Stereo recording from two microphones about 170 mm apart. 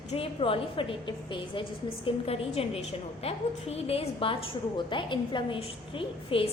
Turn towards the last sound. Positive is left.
turn(degrees=30)  # may be behind; listen again after turning